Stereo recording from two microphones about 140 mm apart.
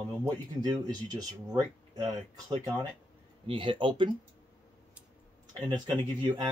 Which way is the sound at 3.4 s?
35° right (ahead or behind).